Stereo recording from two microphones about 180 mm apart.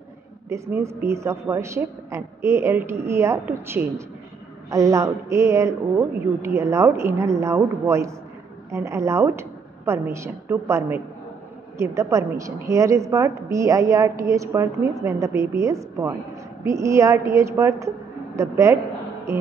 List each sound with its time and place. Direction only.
0.5 s a woman's voice: 15° right (ahead or behind)